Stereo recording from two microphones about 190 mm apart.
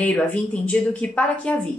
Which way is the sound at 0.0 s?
5° left (ahead or behind).